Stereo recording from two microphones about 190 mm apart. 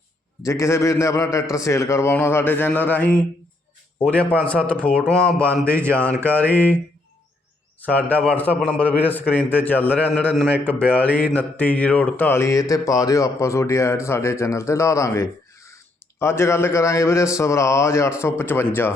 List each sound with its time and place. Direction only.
0.4 s a man's voice: 15° left (ahead or behind)
7.8 s a man's voice: 10° left (ahead or behind)